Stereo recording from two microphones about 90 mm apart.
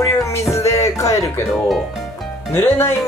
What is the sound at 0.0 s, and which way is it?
Music, 30° left (ahead or behind).